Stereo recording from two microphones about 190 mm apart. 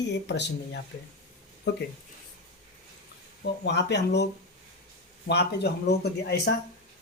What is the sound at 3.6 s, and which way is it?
Speech, 65° left (ahead or behind).